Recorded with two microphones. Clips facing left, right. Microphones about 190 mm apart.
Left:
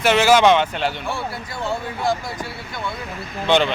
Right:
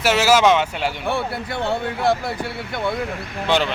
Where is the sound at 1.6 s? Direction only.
60° right (ahead or behind).